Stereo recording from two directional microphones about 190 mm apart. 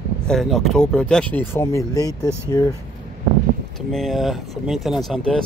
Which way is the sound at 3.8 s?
Centre (ahead or behind).